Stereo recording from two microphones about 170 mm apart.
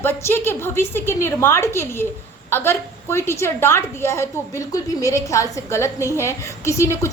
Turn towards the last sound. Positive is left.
turn(degrees=15)  # may be behind; listen again after turning